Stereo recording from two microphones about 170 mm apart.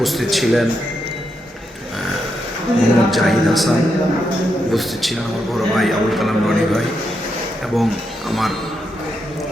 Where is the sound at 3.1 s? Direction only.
Centre (ahead or behind).